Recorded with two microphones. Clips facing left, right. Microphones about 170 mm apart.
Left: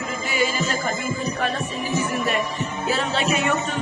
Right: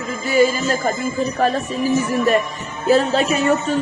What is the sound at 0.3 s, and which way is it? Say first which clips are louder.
Music: right 8 dB; 40° right (ahead or behind).